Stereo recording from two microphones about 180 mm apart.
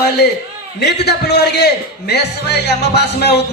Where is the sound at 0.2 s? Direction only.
65° left (ahead or behind).